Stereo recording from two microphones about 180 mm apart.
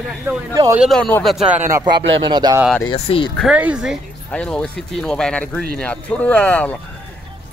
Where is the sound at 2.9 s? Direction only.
30° left (ahead or behind).